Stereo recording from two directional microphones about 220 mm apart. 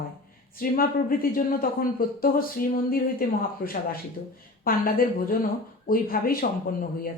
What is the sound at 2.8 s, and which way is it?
Speech, 40° left (ahead or behind).